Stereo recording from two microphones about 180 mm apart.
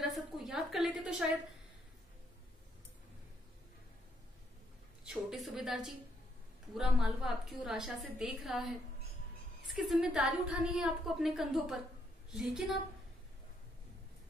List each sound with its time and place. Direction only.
0.0 s a sound: centre (ahead or behind)
5.0 s a woman's voice: centre (ahead or behind)
9.8 s a woman's voice: centre (ahead or behind)